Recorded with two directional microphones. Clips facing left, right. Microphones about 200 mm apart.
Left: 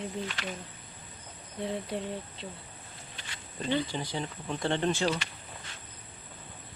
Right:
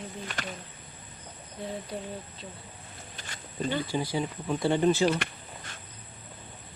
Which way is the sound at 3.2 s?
45° right (ahead or behind).